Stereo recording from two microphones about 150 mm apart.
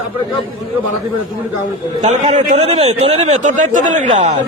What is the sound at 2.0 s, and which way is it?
A man's voice, 50° right (ahead or behind).